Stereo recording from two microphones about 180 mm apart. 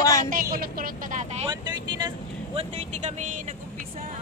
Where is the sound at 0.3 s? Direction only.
55° right (ahead or behind).